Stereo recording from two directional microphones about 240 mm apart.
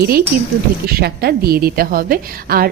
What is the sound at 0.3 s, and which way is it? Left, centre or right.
A woman's voice, right.